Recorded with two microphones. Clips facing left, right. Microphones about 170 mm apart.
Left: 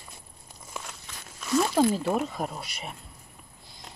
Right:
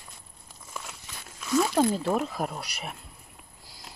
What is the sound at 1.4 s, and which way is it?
Zipper, 5° left (ahead or behind).